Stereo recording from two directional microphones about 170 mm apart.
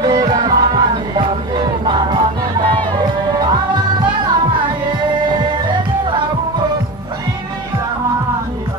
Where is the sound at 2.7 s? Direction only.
25° right (ahead or behind).